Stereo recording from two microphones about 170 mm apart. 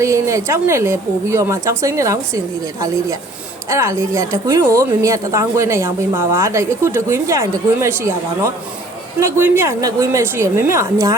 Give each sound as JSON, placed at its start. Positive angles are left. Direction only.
{"t": 0.0, "sound": "a woman's voice", "side_deg": -15}